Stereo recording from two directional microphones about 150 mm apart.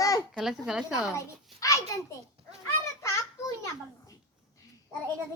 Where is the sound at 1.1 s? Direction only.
20° left (ahead or behind).